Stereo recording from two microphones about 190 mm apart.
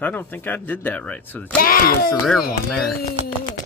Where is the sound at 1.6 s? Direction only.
50° left (ahead or behind).